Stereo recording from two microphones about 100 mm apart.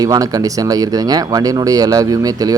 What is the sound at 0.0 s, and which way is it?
Speech, 35° right (ahead or behind).